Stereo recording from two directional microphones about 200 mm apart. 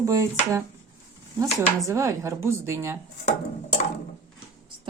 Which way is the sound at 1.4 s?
15° right (ahead or behind).